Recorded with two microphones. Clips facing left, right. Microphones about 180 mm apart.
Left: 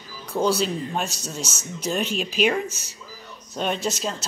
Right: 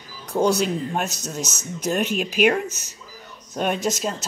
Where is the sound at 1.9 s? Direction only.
10° right (ahead or behind).